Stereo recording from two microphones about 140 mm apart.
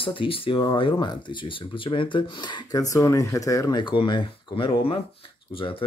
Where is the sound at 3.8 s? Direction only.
35° left (ahead or behind).